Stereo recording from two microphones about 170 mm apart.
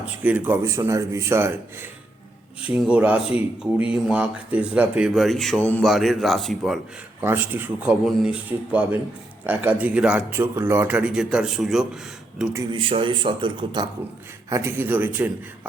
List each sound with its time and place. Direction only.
0.0 s speech: 10° right (ahead or behind)
7.2 s speech: 10° right (ahead or behind)
12.7 s speech: 30° right (ahead or behind)
14.5 s speech: 15° right (ahead or behind)